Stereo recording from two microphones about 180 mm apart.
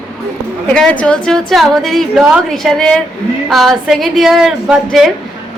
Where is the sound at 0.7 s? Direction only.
5° left (ahead or behind).